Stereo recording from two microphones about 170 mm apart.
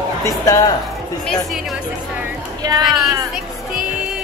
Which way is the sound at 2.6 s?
25° right (ahead or behind).